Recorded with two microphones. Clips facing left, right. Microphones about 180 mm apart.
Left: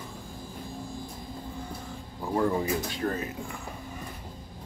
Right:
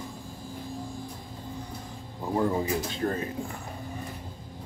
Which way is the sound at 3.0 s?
30° right (ahead or behind).